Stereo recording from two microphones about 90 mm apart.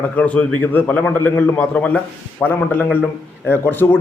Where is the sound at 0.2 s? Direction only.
15° left (ahead or behind).